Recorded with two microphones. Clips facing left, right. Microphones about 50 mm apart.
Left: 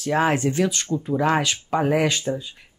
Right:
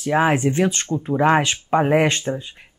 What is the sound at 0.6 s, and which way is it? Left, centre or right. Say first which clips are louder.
Speech: right 2 dB; right.